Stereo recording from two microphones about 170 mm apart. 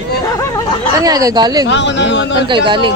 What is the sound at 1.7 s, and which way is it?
Speech, 90° left.